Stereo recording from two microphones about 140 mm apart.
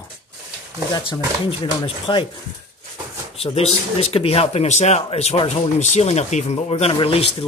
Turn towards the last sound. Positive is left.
turn(degrees=45)  # may be behind; listen again after turning